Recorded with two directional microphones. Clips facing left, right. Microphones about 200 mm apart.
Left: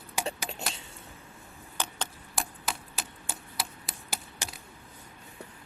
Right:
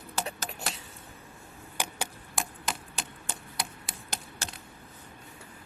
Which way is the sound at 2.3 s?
Centre (ahead or behind).